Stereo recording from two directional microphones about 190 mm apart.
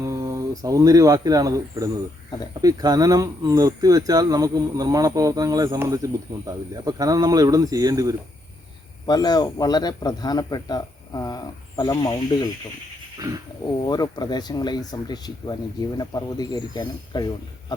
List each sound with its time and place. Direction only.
0.0 s speech: 20° right (ahead or behind)
9.0 s speech: 20° left (ahead or behind)
13.1 s a sound: 20° right (ahead or behind)
13.8 s speech: 20° left (ahead or behind)